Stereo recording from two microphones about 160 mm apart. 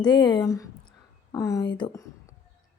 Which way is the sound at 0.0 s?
25° left (ahead or behind).